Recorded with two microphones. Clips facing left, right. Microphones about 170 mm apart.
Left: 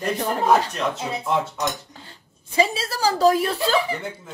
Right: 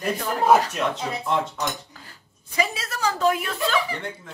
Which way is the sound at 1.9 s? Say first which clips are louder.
Left 3 dB; 25° left (ahead or behind).